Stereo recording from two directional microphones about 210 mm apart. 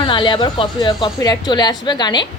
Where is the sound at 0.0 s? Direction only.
20° left (ahead or behind).